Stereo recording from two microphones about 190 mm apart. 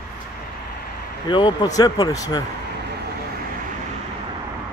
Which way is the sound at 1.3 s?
25° left (ahead or behind).